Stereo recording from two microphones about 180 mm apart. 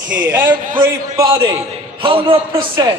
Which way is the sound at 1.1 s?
20° right (ahead or behind).